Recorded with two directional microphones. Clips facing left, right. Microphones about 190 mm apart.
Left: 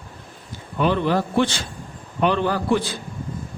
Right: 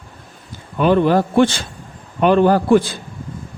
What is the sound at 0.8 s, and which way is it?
A man's voice, 50° right (ahead or behind).